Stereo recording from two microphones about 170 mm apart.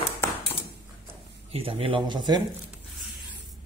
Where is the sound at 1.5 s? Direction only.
35° right (ahead or behind).